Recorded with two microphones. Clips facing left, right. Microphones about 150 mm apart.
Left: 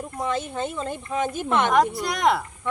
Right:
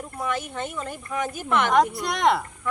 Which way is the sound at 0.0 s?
25° left (ahead or behind).